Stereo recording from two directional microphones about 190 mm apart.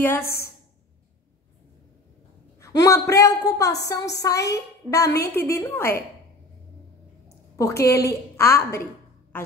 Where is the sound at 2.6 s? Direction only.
15° left (ahead or behind).